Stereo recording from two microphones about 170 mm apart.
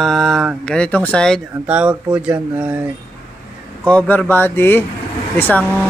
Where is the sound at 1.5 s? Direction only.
10° right (ahead or behind).